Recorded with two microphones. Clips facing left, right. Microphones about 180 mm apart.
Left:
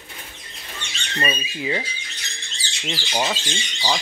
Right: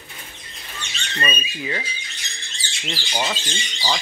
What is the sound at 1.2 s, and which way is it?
Speech, 20° left (ahead or behind).